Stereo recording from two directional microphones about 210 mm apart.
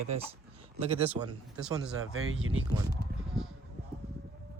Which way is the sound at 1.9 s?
85° right.